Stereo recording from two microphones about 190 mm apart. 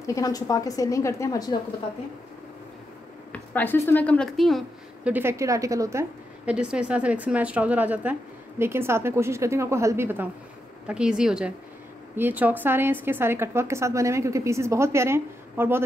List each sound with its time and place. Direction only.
0.0 s a woman's voice: 15° left (ahead or behind)
3.3 s a woman's voice: 10° left (ahead or behind); by 15.8 s 10° right (ahead or behind)